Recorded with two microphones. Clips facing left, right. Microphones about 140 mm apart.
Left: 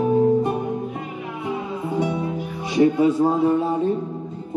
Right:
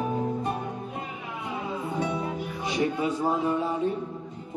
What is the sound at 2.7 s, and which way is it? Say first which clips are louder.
A man's voice: left 11 dB; 25° left (ahead or behind).